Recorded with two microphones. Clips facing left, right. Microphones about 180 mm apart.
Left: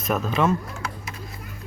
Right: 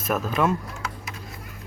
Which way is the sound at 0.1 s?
5° right (ahead or behind).